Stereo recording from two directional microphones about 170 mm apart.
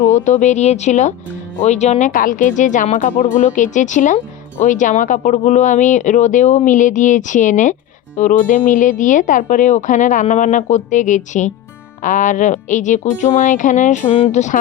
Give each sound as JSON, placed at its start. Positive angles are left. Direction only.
{"t": 0.1, "sound": "speech", "side_deg": 45}